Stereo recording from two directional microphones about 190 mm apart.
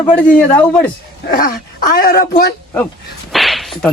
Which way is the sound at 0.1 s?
10° left (ahead or behind).